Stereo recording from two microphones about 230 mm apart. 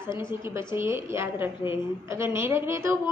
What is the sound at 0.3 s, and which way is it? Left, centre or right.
A woman's voice, centre.